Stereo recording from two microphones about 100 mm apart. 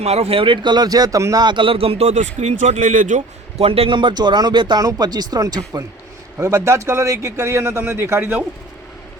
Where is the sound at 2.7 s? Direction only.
90° right.